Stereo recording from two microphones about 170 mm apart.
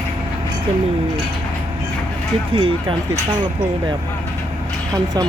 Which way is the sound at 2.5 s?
35° right (ahead or behind).